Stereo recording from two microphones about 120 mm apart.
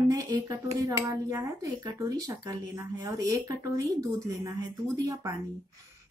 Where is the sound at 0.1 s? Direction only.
30° right (ahead or behind).